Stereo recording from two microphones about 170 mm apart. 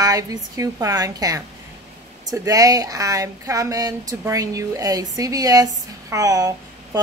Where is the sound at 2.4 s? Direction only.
20° right (ahead or behind).